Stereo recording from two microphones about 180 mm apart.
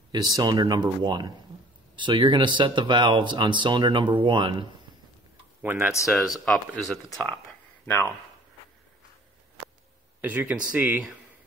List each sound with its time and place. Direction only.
0.1 s speech: 20° right (ahead or behind)
5.6 s speech: 10° right (ahead or behind); by 8.1 s 10° left (ahead or behind)
10.2 s speech: 10° right (ahead or behind)